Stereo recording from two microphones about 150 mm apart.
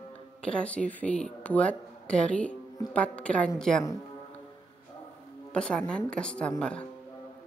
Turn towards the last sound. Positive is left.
turn(degrees=5)  # may be behind; listen again after turning